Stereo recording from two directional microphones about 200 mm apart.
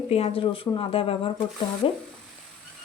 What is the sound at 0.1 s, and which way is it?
A woman's voice, 30° left (ahead or behind).